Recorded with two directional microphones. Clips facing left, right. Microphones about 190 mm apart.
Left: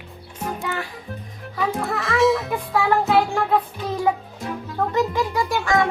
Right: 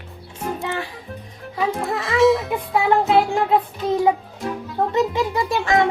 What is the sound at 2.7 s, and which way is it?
Music, 20° right (ahead or behind).